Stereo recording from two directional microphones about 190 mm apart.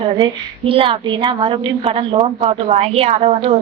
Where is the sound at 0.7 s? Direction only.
30° right (ahead or behind).